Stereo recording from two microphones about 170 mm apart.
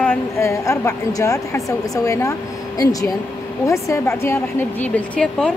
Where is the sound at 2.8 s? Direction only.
20° left (ahead or behind).